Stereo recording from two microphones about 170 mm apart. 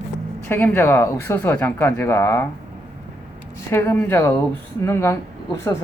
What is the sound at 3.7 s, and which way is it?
Speech, 15° left (ahead or behind).